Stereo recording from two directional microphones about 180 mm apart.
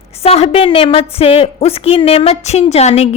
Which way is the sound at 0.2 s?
35° left (ahead or behind).